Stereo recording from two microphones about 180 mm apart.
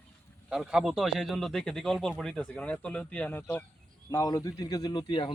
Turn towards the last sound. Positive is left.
turn(degrees=30)  # may be behind; listen again after turning